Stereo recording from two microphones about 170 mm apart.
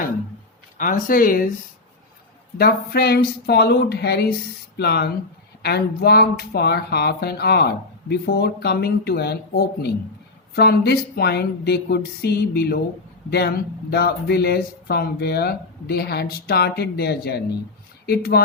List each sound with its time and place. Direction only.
0.8 s speech: 55° left (ahead or behind)
2.6 s speech: 65° left (ahead or behind)